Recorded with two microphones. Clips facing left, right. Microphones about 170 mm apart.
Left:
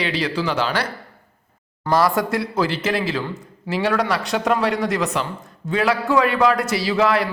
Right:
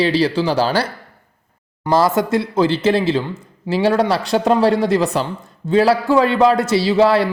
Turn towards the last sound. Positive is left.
turn(degrees=-30)  # may be behind; listen again after turning